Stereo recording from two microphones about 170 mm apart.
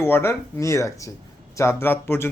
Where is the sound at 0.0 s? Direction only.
15° left (ahead or behind).